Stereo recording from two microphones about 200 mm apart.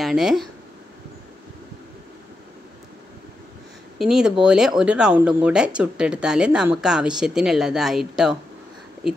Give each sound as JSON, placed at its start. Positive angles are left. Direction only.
{"t": 0.0, "sound": "speech", "side_deg": 0}
{"t": 4.0, "sound": "speech", "side_deg": 0}